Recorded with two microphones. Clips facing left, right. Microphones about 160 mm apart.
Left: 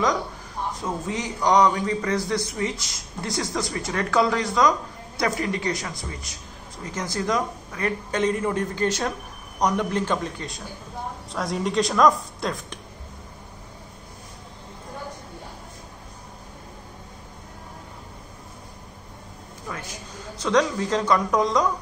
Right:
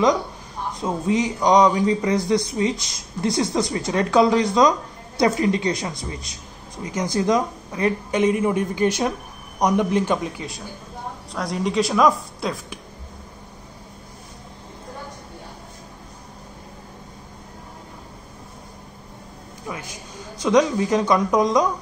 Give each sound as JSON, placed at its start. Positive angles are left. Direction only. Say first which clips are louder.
{"t": 0.7, "sound": "a man's voice", "louder": "right 10 dB", "side_deg": -20}
{"t": 19.7, "sound": "a sound", "louder": "right 3 dB", "side_deg": -10}
{"t": 20.4, "sound": "a man's voice", "louder": "right 4 dB", "side_deg": -15}